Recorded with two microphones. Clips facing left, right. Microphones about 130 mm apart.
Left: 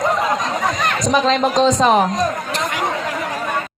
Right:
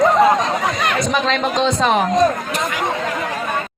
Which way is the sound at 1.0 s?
40° left (ahead or behind).